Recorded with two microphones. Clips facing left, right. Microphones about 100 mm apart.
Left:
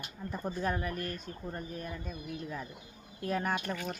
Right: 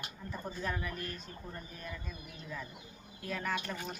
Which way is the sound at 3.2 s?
45° left (ahead or behind).